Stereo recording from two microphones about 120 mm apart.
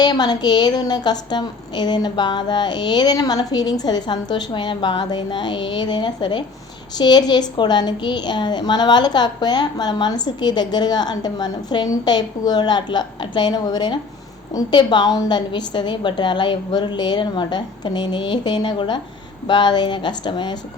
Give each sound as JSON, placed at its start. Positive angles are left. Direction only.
{"t": 0.0, "sound": "a woman's voice", "side_deg": 35}